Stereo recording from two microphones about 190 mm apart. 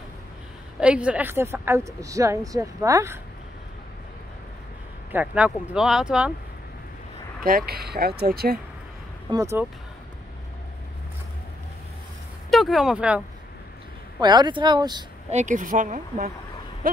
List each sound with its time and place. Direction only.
0.7 s a woman's voice: 5° right (ahead or behind)
5.1 s a woman's voice: 5° right (ahead or behind)
7.4 s speech: 50° right (ahead or behind)
9.3 s a woman's voice: 15° right (ahead or behind)
12.4 s speech: centre (ahead or behind)
14.2 s speech: 20° right (ahead or behind)
15.3 s speech: 40° right (ahead or behind)